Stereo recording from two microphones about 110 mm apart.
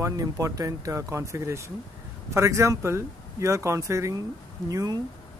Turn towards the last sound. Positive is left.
turn(degrees=-35)  # may be behind; listen again after turning